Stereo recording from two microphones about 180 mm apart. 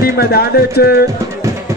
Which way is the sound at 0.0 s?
60° left (ahead or behind).